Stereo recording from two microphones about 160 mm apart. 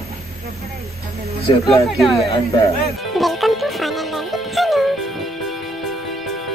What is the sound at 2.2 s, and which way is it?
Speech, 30° left (ahead or behind).